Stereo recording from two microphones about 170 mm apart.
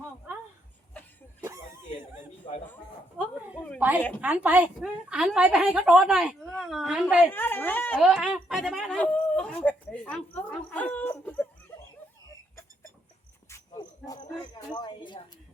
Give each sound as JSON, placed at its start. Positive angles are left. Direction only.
{"t": 3.2, "sound": "a sound", "side_deg": -10}
{"t": 3.8, "sound": "a woman's voice", "side_deg": -10}
{"t": 7.3, "sound": "speech", "side_deg": 10}
{"t": 7.9, "sound": "speech", "side_deg": -5}
{"t": 13.5, "sound": "cricket", "side_deg": 20}